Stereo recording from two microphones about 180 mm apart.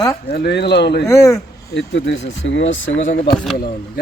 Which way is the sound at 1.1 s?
15° left (ahead or behind).